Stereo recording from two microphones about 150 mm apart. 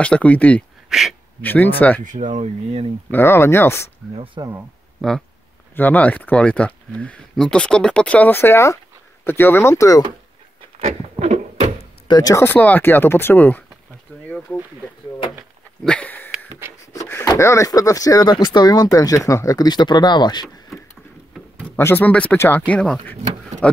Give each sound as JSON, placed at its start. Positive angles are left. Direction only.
{"t": 0.0, "sound": "speech", "side_deg": 10}
{"t": 0.8, "sound": "speech", "side_deg": 0}
{"t": 1.4, "sound": "speech", "side_deg": 10}
{"t": 2.0, "sound": "speech", "side_deg": -55}
{"t": 3.1, "sound": "speech", "side_deg": 15}
{"t": 4.4, "sound": "speech", "side_deg": -30}
{"t": 5.0, "sound": "speech", "side_deg": 0}
{"t": 5.8, "sound": "speech", "side_deg": 10}
{"t": 10.8, "sound": "a sound", "side_deg": -50}
{"t": 12.1, "sound": "speech", "side_deg": 25}
{"t": 15.8, "sound": "dog", "side_deg": 10}
{"t": 16.3, "sound": "a sound", "side_deg": -15}
{"t": 17.1, "sound": "speech", "side_deg": 20}
{"t": 21.7, "sound": "speech", "side_deg": 15}